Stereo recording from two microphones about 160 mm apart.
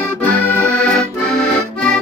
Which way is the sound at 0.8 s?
5° left (ahead or behind).